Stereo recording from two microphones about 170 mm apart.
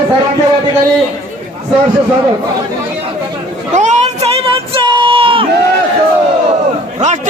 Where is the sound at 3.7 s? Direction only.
45° right (ahead or behind).